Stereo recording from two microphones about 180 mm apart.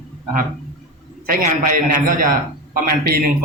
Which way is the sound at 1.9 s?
45° right (ahead or behind).